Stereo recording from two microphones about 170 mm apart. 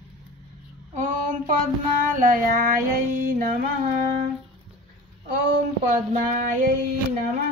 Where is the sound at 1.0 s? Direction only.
50° right (ahead or behind).